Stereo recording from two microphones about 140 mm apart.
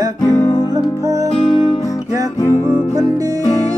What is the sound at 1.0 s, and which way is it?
Music, 20° right (ahead or behind).